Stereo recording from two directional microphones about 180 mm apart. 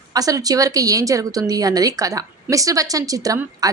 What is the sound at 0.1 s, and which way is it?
A woman's voice, 20° right (ahead or behind).